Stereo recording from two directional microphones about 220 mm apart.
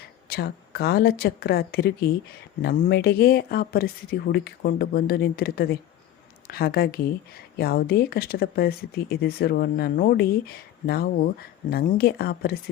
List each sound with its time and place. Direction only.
0.3 s speech: 45° left (ahead or behind)